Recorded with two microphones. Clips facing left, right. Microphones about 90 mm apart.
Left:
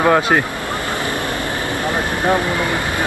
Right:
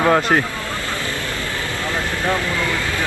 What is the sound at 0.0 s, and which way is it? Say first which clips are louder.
Speech: left 2 dB; 10° left (ahead or behind).